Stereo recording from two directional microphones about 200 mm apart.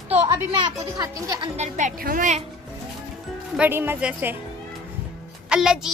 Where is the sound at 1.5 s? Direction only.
35° right (ahead or behind).